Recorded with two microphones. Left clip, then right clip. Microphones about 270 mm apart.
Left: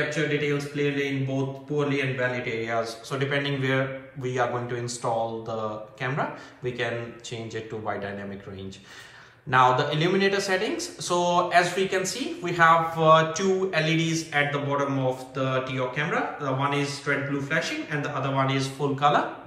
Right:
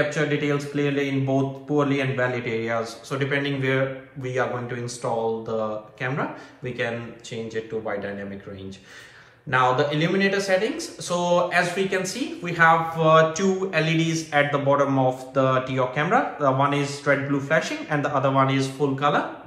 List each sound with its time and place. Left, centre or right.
0.1 s speech: centre
9.5 s speech: centre